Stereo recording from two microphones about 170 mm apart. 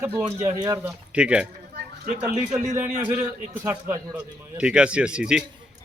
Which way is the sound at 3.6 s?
20° right (ahead or behind).